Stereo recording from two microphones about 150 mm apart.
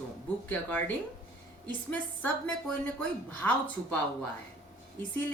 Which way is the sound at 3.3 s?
10° left (ahead or behind).